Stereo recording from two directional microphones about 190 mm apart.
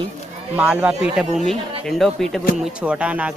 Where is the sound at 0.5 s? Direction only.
10° right (ahead or behind).